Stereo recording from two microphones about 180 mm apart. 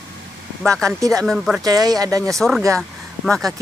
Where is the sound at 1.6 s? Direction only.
20° right (ahead or behind).